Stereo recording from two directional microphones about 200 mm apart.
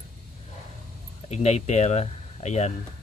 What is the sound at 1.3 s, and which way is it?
Speech, 35° left (ahead or behind).